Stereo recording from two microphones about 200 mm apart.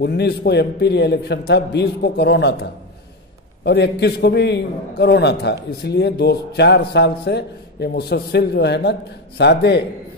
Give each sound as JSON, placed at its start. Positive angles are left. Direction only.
{"t": 0.0, "sound": "a man's voice", "side_deg": 55}